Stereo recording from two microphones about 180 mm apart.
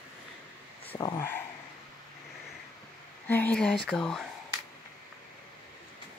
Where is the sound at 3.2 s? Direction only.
10° left (ahead or behind).